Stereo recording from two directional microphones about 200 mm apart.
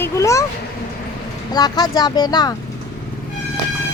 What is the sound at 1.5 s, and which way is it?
Speech, 20° left (ahead or behind).